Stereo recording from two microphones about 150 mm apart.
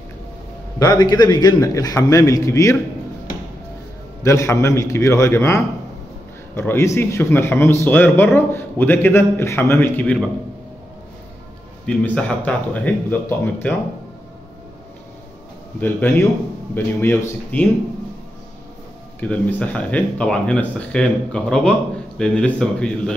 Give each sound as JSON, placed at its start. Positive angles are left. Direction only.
{"t": 0.7, "sound": "a man's voice", "side_deg": 25}
{"t": 4.2, "sound": "a man's voice", "side_deg": 20}
{"t": 6.7, "sound": "speech", "side_deg": 15}
{"t": 11.8, "sound": "speech", "side_deg": 10}
{"t": 15.8, "sound": "speech", "side_deg": 15}
{"t": 19.1, "sound": "speech", "side_deg": 10}